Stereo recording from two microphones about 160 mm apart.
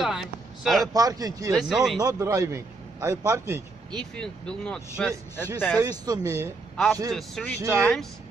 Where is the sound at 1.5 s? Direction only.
Centre (ahead or behind).